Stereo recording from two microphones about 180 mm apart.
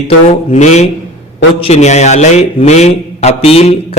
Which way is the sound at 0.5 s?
40° left (ahead or behind).